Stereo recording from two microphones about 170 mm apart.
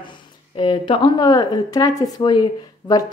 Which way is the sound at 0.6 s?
30° left (ahead or behind).